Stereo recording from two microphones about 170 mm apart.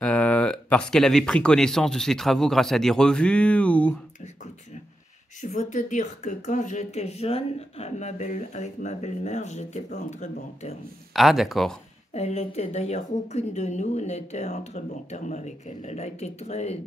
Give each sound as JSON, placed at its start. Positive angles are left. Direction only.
{"t": 0.0, "sound": "speech", "side_deg": 5}
{"t": 5.4, "sound": "speech", "side_deg": 45}
{"t": 11.1, "sound": "speech", "side_deg": 0}
{"t": 12.1, "sound": "a woman's voice", "side_deg": 40}